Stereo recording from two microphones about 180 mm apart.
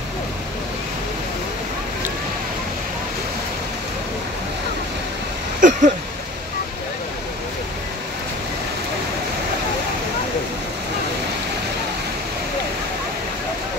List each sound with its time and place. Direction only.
5.6 s vehicle: 45° right (ahead or behind)